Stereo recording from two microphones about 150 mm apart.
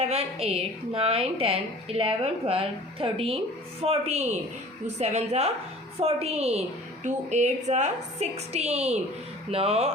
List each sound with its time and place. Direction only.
0.0 s a woman's voice: 45° right (ahead or behind)